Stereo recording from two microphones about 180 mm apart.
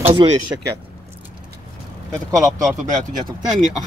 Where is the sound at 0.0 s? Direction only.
30° right (ahead or behind).